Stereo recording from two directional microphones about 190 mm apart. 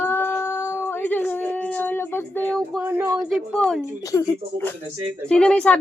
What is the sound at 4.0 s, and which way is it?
A woman's voice, 15° left (ahead or behind).